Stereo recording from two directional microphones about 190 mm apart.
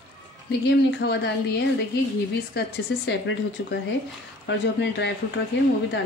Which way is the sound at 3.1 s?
70° left (ahead or behind).